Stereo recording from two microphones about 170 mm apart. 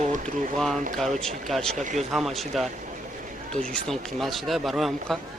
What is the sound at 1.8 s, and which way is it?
Speech, 45° right (ahead or behind).